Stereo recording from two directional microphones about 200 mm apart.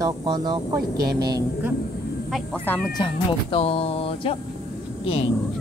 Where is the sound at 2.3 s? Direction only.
Centre (ahead or behind).